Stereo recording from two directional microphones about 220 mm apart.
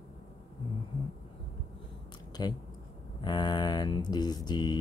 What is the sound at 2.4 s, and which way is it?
Speech, 20° left (ahead or behind).